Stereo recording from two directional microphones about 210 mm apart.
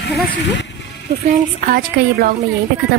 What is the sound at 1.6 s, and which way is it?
Speech, 45° right (ahead or behind).